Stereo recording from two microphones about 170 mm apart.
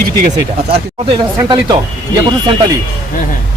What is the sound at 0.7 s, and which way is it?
Speech, 30° right (ahead or behind).